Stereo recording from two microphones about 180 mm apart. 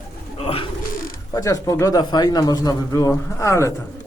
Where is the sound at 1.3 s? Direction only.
20° left (ahead or behind).